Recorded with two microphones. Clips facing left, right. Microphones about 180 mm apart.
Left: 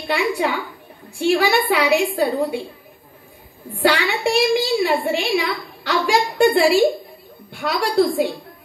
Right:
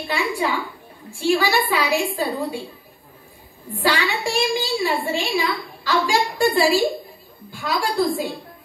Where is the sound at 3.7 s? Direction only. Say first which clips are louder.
Left 3 dB; 65° left (ahead or behind).